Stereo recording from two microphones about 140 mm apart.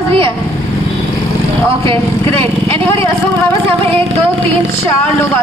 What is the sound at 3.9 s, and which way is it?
Speech, 45° right (ahead or behind).